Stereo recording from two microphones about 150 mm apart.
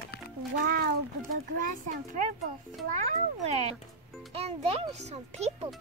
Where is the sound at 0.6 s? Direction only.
90° right.